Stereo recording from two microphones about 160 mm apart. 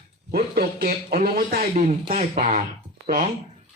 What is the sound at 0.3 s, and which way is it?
A man's voice, 70° right (ahead or behind).